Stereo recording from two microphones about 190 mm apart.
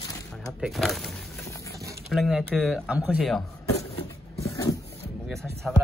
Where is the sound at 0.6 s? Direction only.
Centre (ahead or behind).